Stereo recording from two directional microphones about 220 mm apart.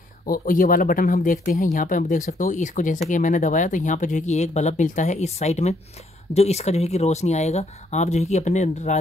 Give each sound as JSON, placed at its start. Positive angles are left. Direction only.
{"t": 0.3, "sound": "speech", "side_deg": 40}